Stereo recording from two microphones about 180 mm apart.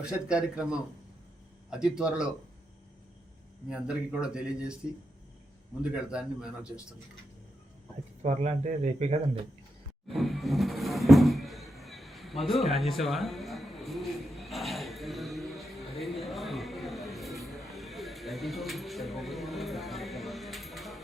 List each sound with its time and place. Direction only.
0.0 s speech: 5° right (ahead or behind)
3.7 s speech: 5° right (ahead or behind)
5.9 s speech: 5° right (ahead or behind)
8.2 s speech: 40° right (ahead or behind)
10.1 s a sound: centre (ahead or behind)